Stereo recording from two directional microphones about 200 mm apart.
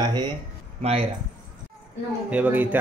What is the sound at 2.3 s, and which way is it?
Speech, 10° right (ahead or behind).